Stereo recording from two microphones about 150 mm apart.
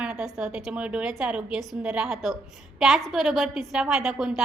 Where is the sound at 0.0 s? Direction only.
5° right (ahead or behind).